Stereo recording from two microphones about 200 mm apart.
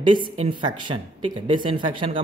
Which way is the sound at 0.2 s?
25° right (ahead or behind).